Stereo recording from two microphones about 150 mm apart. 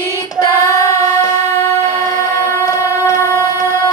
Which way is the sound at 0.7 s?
20° left (ahead or behind).